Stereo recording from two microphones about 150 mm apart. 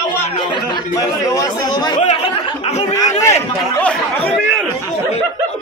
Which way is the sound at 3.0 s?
20° left (ahead or behind).